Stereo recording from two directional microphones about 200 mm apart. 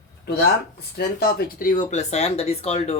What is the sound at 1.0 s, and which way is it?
Speech, 50° left (ahead or behind).